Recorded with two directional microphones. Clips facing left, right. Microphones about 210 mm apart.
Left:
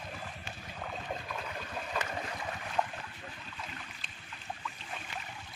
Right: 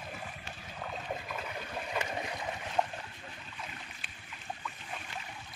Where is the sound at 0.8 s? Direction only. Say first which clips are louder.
Right 1 dB; centre (ahead or behind).